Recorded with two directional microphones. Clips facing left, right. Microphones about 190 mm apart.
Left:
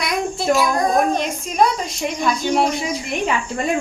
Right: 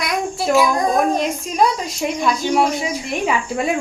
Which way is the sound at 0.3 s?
10° right (ahead or behind).